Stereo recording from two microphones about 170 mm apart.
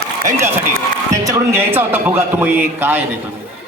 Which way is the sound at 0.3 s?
15° right (ahead or behind).